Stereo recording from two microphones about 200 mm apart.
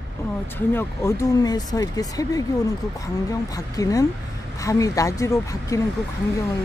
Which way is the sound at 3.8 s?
15° left (ahead or behind).